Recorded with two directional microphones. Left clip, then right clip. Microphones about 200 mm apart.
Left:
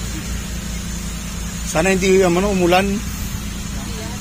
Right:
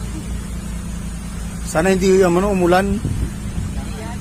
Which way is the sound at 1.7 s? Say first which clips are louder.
Even; 30° right (ahead or behind).